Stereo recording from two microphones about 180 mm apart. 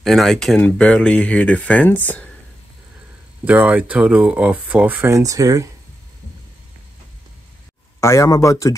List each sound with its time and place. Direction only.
0.0 s speech: centre (ahead or behind)
3.4 s speech: 10° right (ahead or behind)
8.0 s speech: 15° left (ahead or behind)